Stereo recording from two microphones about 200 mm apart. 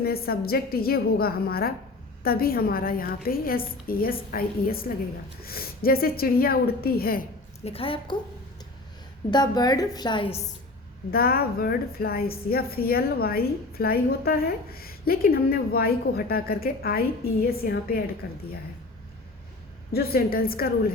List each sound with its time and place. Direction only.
0.0 s a woman's voice: 50° left (ahead or behind)
7.6 s a woman's voice: 30° left (ahead or behind)
9.3 s a woman's voice: 20° left (ahead or behind)
11.1 s a woman's voice: 50° left (ahead or behind)
19.9 s a woman's voice: 50° left (ahead or behind)